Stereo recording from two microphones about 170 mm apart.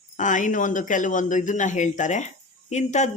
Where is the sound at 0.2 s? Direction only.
50° left (ahead or behind).